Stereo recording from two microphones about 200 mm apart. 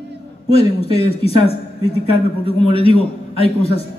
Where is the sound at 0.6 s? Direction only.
30° left (ahead or behind).